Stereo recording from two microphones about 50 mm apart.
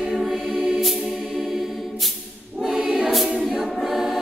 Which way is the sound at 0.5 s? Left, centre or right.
Centre.